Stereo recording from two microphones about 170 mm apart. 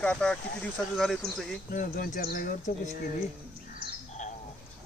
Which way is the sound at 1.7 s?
60° left (ahead or behind).